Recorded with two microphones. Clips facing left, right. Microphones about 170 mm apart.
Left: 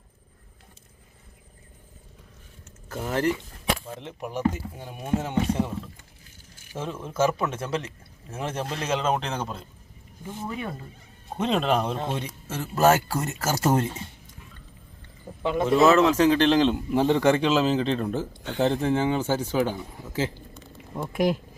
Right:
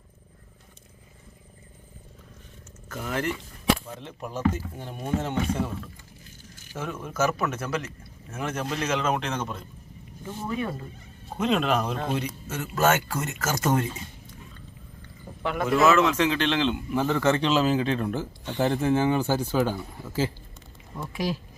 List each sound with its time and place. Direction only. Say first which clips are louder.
2.9 s speech: left 4 dB; 35° left (ahead or behind)
4.2 s speech: even; 15° left (ahead or behind); by 9.6 s 30° left (ahead or behind)
10.2 s speech: right 3 dB; 15° left (ahead or behind)
11.3 s speech: even; 30° left (ahead or behind)
15.4 s speech: left 2 dB; 25° left (ahead or behind)
17.2 s speech: even; 15° left (ahead or behind)
17.4 s speech: left 1 dB; centre (ahead or behind)
18.9 s speech: right 1 dB; 20° left (ahead or behind)
19.2 s speech: even; 10° right (ahead or behind)
19.5 s speech: even; 15° left (ahead or behind)
21.1 s speech: left 6 dB; 55° left (ahead or behind)